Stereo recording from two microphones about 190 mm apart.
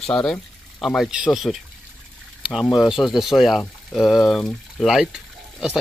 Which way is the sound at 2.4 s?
5° right (ahead or behind).